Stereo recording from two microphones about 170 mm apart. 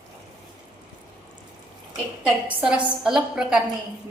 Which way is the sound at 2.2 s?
5° right (ahead or behind).